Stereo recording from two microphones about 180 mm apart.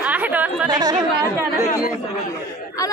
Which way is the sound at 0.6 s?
20° right (ahead or behind).